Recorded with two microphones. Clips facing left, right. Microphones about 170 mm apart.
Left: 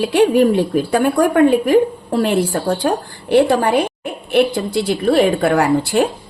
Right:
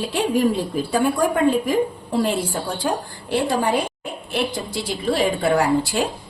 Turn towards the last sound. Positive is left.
turn(degrees=60)  # may be behind; listen again after turning